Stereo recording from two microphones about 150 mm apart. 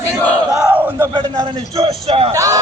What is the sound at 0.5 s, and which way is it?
Battle cry, 10° right (ahead or behind).